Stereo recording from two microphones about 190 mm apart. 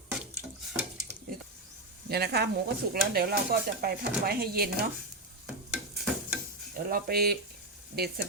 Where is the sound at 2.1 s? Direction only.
60° right (ahead or behind).